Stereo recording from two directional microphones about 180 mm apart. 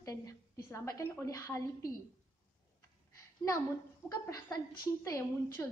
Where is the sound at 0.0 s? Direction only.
20° left (ahead or behind).